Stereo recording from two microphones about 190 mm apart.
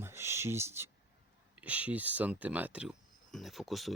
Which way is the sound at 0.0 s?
15° right (ahead or behind).